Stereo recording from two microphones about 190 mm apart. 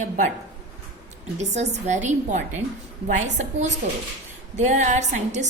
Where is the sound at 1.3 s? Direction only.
35° right (ahead or behind).